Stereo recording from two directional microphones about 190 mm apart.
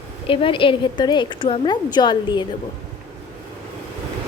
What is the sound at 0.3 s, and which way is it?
A woman's voice, 25° left (ahead or behind).